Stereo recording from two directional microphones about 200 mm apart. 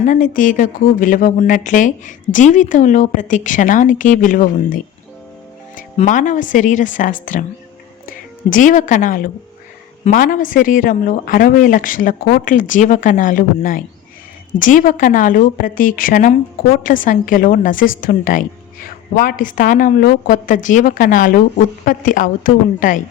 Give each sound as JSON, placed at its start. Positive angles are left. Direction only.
{"t": 0.0, "sound": "speech", "side_deg": 40}